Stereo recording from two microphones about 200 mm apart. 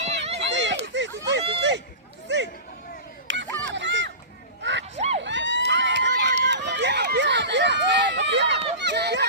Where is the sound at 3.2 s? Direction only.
65° right (ahead or behind).